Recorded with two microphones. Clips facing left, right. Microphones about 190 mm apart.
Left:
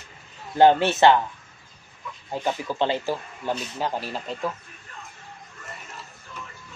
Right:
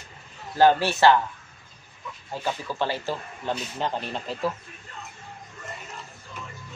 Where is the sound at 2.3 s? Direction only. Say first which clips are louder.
Left 3 dB; 20° left (ahead or behind).